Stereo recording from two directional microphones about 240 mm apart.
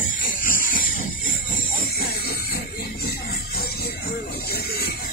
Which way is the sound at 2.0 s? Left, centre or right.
Left.